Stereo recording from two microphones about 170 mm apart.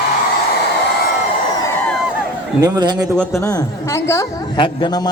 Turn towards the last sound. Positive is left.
turn(degrees=25)  # may be behind; listen again after turning